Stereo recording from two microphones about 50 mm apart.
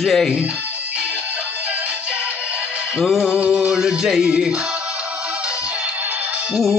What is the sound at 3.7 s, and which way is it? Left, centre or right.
Music, centre.